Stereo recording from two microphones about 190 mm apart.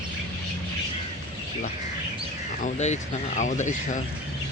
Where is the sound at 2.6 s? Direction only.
35° left (ahead or behind).